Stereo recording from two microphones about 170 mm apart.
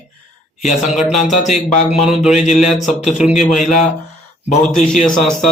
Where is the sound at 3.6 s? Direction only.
45° left (ahead or behind).